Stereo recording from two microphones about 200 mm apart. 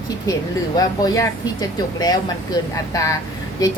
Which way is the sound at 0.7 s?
20° left (ahead or behind).